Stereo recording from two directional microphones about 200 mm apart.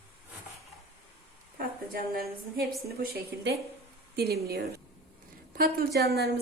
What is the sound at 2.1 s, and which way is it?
Speech, 50° right (ahead or behind).